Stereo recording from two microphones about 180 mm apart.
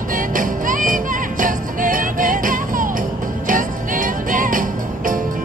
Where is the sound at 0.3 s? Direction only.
50° right (ahead or behind).